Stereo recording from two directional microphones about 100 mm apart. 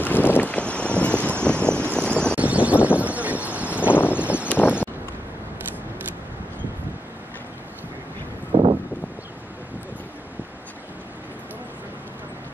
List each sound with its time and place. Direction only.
0.0 s vehicle: 20° left (ahead or behind)
2.3 s vehicle: 15° right (ahead or behind)
3.9 s a sound: 20° left (ahead or behind)
4.2 s a sound: 15° right (ahead or behind)
4.5 s vehicle: 20° left (ahead or behind)
8.5 s vehicle: 50° right (ahead or behind)